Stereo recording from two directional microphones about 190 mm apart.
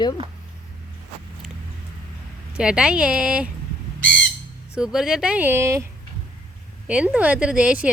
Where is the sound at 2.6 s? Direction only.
5° right (ahead or behind).